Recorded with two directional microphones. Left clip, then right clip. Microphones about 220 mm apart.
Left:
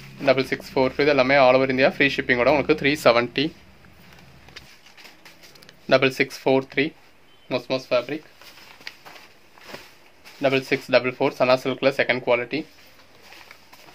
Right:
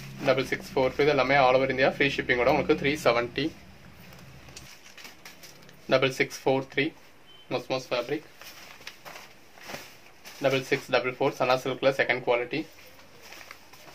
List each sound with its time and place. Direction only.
0.2 s speech: 45° left (ahead or behind)
5.9 s speech: 45° left (ahead or behind)
10.4 s speech: 45° left (ahead or behind)